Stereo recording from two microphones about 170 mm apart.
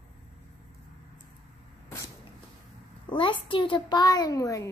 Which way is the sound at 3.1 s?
30° left (ahead or behind).